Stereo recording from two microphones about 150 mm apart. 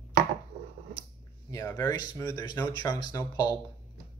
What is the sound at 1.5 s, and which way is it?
Speech, 15° left (ahead or behind).